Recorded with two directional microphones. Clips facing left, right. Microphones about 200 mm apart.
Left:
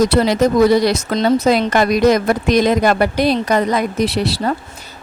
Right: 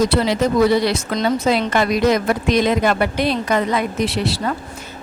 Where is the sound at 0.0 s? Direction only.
40° left (ahead or behind).